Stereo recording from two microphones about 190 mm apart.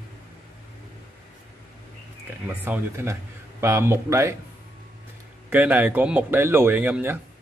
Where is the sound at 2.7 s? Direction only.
15° right (ahead or behind).